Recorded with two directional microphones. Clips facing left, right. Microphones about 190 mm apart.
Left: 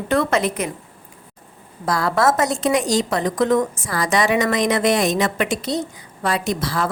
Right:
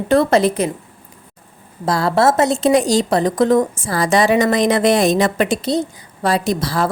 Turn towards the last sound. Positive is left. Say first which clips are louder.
# right 4 dB
turn(degrees=-35)  # may be behind; listen again after turning